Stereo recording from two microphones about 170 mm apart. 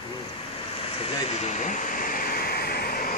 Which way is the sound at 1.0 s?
40° left (ahead or behind).